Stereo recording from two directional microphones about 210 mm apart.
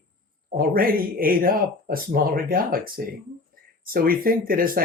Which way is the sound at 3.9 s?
45° right (ahead or behind).